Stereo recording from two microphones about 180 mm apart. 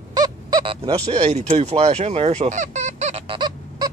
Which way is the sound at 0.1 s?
25° right (ahead or behind).